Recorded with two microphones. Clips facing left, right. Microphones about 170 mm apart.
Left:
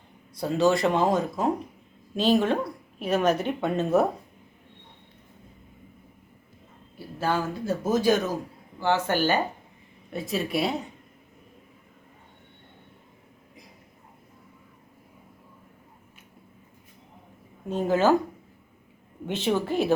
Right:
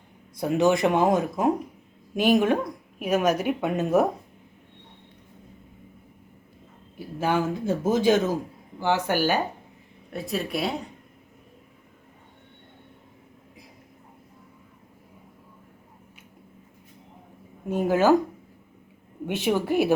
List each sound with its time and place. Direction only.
0.3 s speech: 20° right (ahead or behind)
7.2 s a man's voice: 15° right (ahead or behind)
10.1 s speech: centre (ahead or behind)
17.7 s speech: 10° right (ahead or behind)
19.2 s speech: 10° right (ahead or behind)